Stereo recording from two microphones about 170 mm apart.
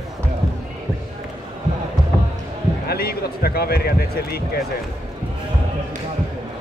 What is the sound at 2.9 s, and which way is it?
Speech, 65° left (ahead or behind).